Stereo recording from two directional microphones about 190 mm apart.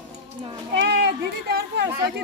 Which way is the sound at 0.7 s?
60° right (ahead or behind).